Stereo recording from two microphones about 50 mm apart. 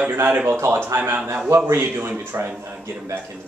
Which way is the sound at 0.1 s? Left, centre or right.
Right.